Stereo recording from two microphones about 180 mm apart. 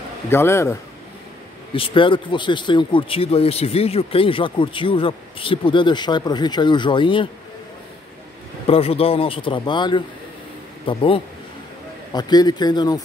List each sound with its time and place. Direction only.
0.3 s speech: 15° left (ahead or behind)
1.7 s speech: 30° left (ahead or behind)
8.6 s a man's voice: 30° left (ahead or behind)